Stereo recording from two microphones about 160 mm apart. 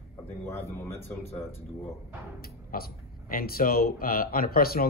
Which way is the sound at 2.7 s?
65° left (ahead or behind).